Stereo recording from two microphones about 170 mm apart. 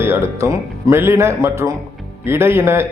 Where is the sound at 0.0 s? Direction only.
15° right (ahead or behind).